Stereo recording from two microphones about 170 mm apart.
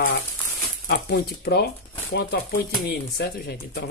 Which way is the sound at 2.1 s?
90° left.